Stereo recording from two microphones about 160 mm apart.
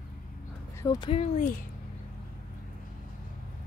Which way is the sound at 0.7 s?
25° left (ahead or behind).